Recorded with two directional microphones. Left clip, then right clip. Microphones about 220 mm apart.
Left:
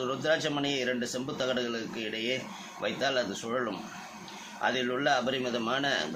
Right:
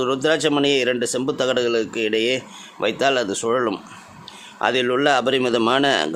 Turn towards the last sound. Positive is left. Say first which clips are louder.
# right 12 dB
turn(degrees=-50)  # may be behind; listen again after turning